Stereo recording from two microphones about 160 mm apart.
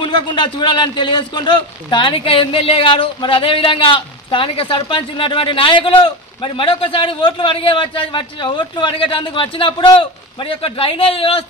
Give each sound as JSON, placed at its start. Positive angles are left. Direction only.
{"t": 0.0, "sound": "a man's voice", "side_deg": 30}